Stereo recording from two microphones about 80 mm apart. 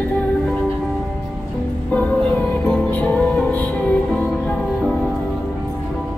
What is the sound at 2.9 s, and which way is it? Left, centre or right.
Music, centre.